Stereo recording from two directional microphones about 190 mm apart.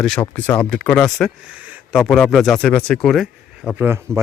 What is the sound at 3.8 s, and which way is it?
Speech, 15° right (ahead or behind).